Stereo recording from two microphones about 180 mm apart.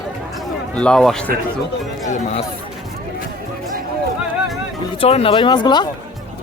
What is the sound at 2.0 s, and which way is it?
Speech, 40° left (ahead or behind).